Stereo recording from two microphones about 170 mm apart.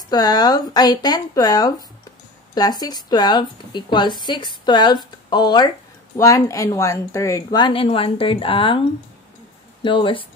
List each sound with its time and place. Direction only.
0.1 s speech: 25° left (ahead or behind)
9.8 s speech: 30° left (ahead or behind)